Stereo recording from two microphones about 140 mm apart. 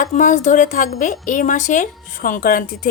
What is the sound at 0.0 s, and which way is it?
Speech, 65° left (ahead or behind).